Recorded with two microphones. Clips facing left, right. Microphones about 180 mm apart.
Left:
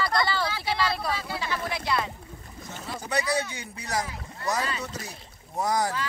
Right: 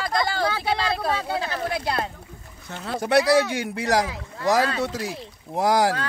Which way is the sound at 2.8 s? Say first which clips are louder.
Right 10 dB; 70° right (ahead or behind).